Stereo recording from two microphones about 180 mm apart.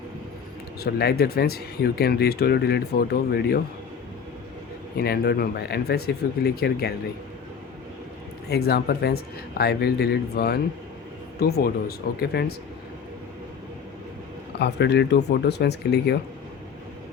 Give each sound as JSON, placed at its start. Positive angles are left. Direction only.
{"t": 0.8, "sound": "speech", "side_deg": 60}
{"t": 4.9, "sound": "speech", "side_deg": 60}
{"t": 8.4, "sound": "speech", "side_deg": 60}
{"t": 14.6, "sound": "speech", "side_deg": 70}